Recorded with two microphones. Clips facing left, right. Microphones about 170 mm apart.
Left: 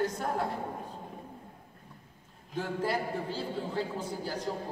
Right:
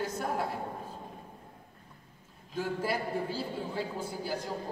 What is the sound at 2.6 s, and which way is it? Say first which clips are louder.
A man's voice: left 1 dB; 10° right (ahead or behind).